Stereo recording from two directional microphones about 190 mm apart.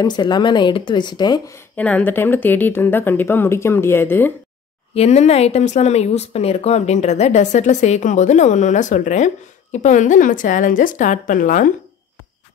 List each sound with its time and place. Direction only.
0.0 s a woman's voice: 20° left (ahead or behind)
1.8 s a woman's voice: 10° left (ahead or behind)
4.9 s speech: 35° left (ahead or behind)